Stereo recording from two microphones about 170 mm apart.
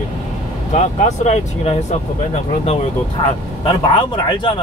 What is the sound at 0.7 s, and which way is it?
Speech, 45° left (ahead or behind).